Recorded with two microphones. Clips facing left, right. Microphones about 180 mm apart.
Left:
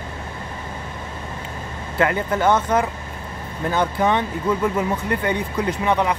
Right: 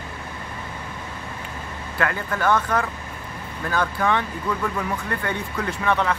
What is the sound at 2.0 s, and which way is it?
Speech, 20° left (ahead or behind).